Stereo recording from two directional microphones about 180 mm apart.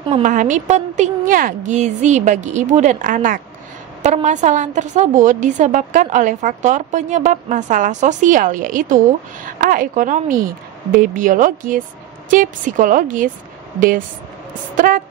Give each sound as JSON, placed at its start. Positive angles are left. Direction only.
{"t": 0.1, "sound": "a woman's voice", "side_deg": -45}